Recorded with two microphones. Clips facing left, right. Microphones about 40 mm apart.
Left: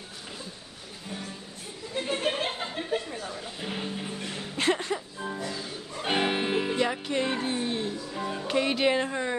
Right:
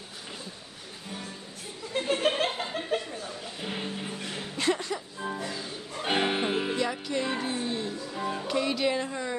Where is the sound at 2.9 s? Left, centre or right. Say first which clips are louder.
Even; right.